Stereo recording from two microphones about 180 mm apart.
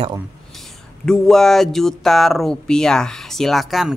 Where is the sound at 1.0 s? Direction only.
5° left (ahead or behind).